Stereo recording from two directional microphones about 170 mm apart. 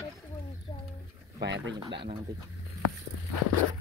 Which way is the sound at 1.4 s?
90° right.